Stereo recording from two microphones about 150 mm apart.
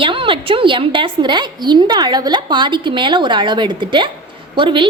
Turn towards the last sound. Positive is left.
turn(degrees=-35)  # may be behind; listen again after turning